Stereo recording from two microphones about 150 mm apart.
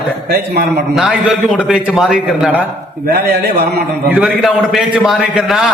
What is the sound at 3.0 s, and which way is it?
Speech, 90° right.